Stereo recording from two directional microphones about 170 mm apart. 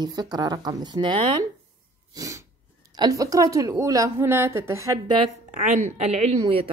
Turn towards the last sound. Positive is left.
turn(degrees=-30)  # may be behind; listen again after turning